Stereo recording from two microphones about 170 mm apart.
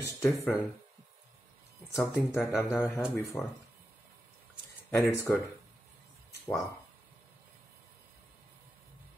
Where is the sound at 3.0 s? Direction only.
Centre (ahead or behind).